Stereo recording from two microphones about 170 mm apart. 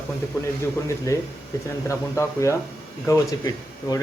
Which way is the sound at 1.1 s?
15° left (ahead or behind).